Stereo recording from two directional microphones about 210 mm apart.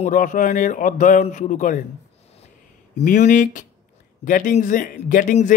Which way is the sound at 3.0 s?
35° left (ahead or behind).